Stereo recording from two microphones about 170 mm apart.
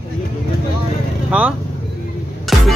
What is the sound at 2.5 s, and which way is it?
Music, centre (ahead or behind).